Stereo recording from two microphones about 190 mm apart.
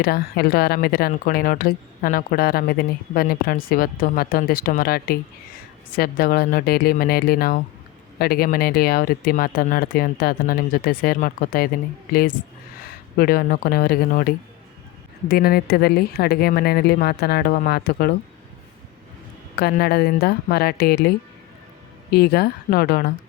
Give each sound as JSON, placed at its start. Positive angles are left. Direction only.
{"t": 0.0, "sound": "speech", "side_deg": 55}
{"t": 19.5, "sound": "a woman's voice", "side_deg": 55}
{"t": 22.1, "sound": "a woman's voice", "side_deg": 55}